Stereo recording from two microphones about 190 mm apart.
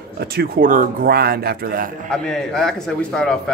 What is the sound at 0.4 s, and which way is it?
Speech, 45° right (ahead or behind).